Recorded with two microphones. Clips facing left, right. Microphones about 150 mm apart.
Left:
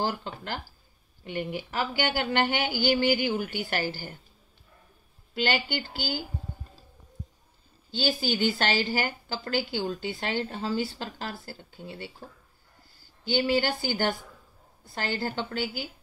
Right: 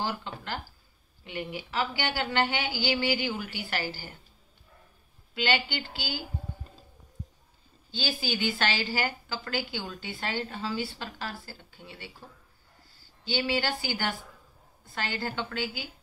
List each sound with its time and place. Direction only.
0.0 s a woman's voice: 45° left (ahead or behind)
5.3 s a woman's voice: 45° left (ahead or behind)
7.9 s a woman's voice: 45° left (ahead or behind)
13.3 s a woman's voice: 45° left (ahead or behind)